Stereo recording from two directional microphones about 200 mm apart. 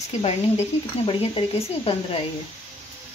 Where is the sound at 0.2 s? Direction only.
30° left (ahead or behind).